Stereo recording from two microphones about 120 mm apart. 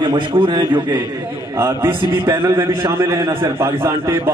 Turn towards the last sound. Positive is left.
turn(degrees=-20)  # may be behind; listen again after turning